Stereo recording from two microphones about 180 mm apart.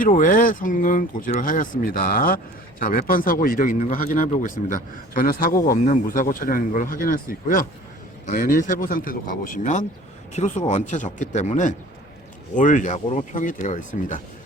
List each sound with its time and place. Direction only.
0.0 s speech: 45° left (ahead or behind)